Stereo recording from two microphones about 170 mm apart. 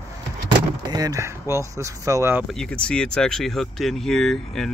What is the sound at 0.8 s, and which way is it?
Speech, 25° right (ahead or behind).